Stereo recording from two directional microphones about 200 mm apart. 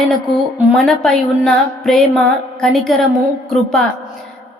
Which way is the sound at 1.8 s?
Centre (ahead or behind).